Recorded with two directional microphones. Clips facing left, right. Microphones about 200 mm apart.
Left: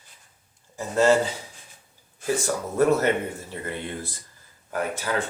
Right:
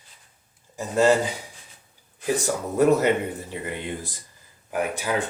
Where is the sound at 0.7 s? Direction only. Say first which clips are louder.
Even; 15° right (ahead or behind).